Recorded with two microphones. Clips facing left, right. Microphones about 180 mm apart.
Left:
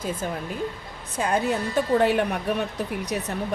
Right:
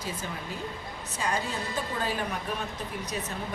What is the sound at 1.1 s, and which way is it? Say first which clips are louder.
A woman's voice: left 8 dB; 60° left (ahead or behind).